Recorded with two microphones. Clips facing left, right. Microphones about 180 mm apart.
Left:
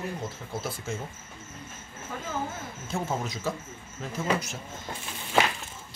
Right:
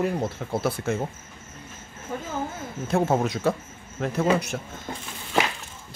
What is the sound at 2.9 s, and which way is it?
Speech, 60° right (ahead or behind).